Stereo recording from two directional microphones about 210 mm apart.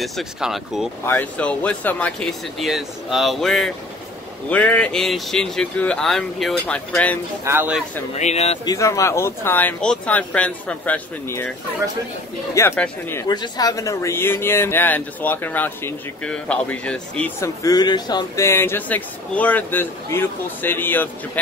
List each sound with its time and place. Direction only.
0.0 s speech: centre (ahead or behind)
7.4 s speech: 10° right (ahead or behind)
8.1 s speech: 30° left (ahead or behind)
8.6 s speech: 15° left (ahead or behind)
12.5 s speech: 10° left (ahead or behind)
17.6 s speech: 20° left (ahead or behind)